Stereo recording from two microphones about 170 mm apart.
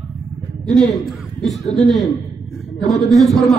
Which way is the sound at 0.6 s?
Centre (ahead or behind).